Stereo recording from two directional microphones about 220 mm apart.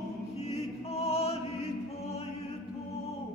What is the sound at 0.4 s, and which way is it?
Choir, 30° left (ahead or behind).